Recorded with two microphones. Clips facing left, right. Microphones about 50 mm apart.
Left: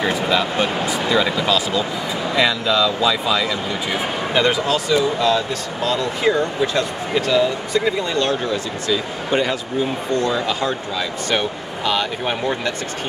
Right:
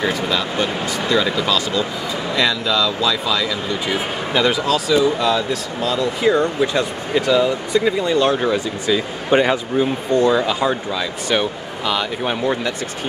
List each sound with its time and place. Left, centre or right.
0.0 s speech: centre; by 9.6 s right
10.3 s speech: centre
11.0 s speech: centre